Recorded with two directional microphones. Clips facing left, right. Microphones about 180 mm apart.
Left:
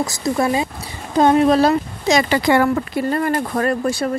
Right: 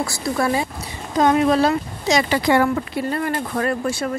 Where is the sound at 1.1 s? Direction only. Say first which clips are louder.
Left 3 dB; 30° left (ahead or behind).